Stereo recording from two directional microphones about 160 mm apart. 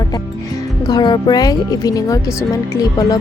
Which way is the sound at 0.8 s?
25° left (ahead or behind).